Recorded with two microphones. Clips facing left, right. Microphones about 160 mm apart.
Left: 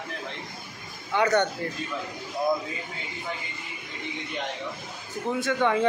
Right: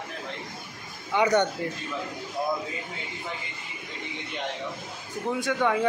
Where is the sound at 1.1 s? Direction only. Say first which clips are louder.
Even; 20° right (ahead or behind).